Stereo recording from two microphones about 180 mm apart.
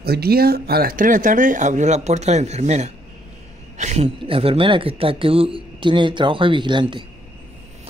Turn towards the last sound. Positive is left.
turn(degrees=-25)  # may be behind; listen again after turning